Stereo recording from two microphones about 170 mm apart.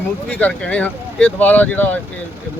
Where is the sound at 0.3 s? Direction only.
10° left (ahead or behind).